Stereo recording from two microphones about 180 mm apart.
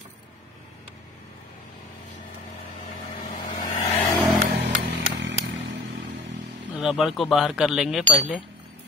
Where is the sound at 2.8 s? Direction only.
45° left (ahead or behind).